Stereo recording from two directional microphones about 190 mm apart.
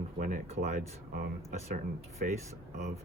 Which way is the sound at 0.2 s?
40° right (ahead or behind).